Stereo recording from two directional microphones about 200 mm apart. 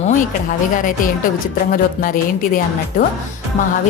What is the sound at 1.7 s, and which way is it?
Speech, 45° left (ahead or behind).